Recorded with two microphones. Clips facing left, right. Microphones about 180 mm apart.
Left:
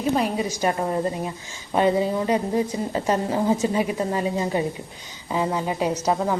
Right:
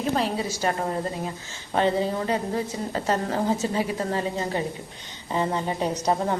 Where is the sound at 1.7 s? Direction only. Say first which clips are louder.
Left 3 dB; 15° left (ahead or behind).